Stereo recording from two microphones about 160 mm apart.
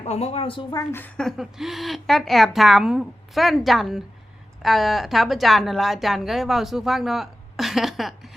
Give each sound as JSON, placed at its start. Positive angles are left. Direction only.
{"t": 0.0, "sound": "speech", "side_deg": 40}
{"t": 0.7, "sound": "a woman's voice", "side_deg": 20}
{"t": 1.0, "sound": "a woman's voice", "side_deg": 5}